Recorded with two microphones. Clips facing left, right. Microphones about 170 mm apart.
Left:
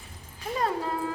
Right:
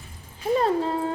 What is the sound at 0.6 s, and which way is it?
Speech, 25° right (ahead or behind).